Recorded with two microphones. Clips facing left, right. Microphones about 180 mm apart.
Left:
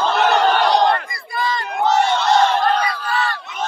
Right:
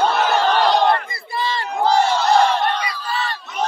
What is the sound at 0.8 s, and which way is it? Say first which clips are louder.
Battle cry: even; 25° right (ahead or behind).